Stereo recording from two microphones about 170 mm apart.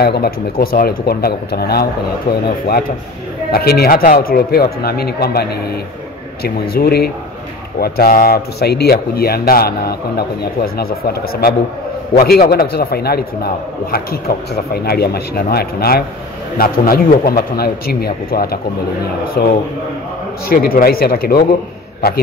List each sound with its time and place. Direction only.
0.0 s speech: 65° left (ahead or behind)
3.5 s speech: 65° left (ahead or behind)
6.8 s speech: 65° left (ahead or behind)